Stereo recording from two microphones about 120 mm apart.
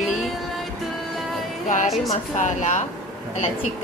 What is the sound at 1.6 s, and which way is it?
A woman's voice, 90° left.